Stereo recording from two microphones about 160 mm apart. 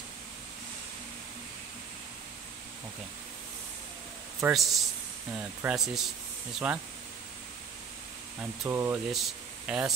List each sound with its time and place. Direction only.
4.5 s a man's voice: centre (ahead or behind)
8.4 s speech: 15° right (ahead or behind)
9.1 s speech: 5° right (ahead or behind)